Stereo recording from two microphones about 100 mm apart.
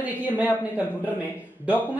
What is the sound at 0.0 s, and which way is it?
Speech, 20° right (ahead or behind).